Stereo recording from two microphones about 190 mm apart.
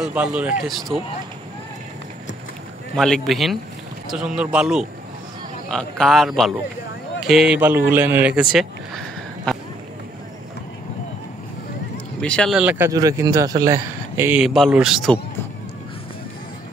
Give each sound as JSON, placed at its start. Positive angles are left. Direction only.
{"t": 0.0, "sound": "speech", "side_deg": -5}
{"t": 3.0, "sound": "speech", "side_deg": 0}
{"t": 12.2, "sound": "speech", "side_deg": 5}